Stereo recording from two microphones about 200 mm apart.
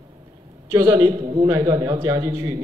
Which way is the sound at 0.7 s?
20° right (ahead or behind).